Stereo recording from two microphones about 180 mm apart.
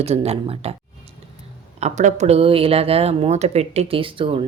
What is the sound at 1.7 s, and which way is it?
Speech, 40° right (ahead or behind).